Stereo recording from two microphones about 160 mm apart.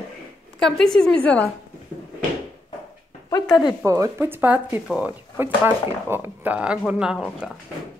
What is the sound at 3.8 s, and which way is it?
Speech, 20° right (ahead or behind).